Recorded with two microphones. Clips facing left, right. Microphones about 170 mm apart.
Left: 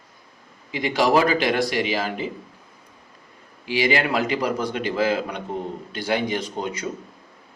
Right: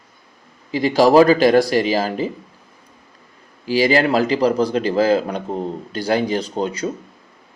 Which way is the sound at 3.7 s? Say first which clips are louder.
Right 6 dB; 35° right (ahead or behind).